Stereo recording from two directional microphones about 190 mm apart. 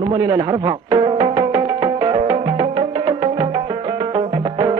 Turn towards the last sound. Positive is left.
turn(degrees=-25)  # may be behind; listen again after turning